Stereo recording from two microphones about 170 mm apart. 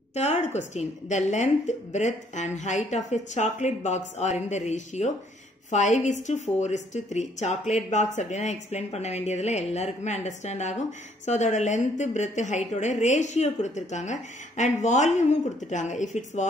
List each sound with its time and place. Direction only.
0.1 s a woman's voice: 40° left (ahead or behind)